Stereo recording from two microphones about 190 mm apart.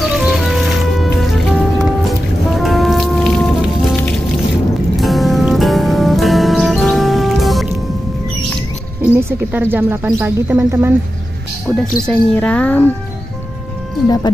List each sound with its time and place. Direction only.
0.0 s music: centre (ahead or behind)
4.9 s music: centre (ahead or behind)
9.0 s a woman's voice: 10° right (ahead or behind)
11.6 s speech: 5° left (ahead or behind)
14.0 s speech: 20° left (ahead or behind)